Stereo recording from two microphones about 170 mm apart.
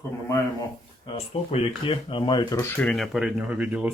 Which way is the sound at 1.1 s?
35° left (ahead or behind).